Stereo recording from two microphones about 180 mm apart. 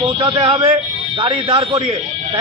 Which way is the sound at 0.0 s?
25° right (ahead or behind).